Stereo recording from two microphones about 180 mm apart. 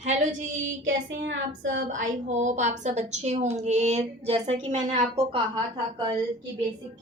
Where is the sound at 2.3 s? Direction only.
40° right (ahead or behind).